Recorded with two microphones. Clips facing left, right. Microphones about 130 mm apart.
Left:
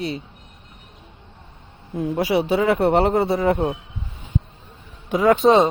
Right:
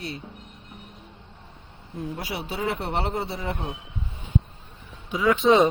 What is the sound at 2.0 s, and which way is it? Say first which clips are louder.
Speech: left 12 dB; 90° left.